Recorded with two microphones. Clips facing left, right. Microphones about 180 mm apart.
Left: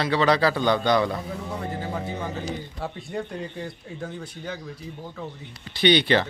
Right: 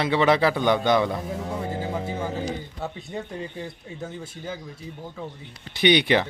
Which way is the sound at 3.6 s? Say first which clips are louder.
Left 1 dB; 25° right (ahead or behind).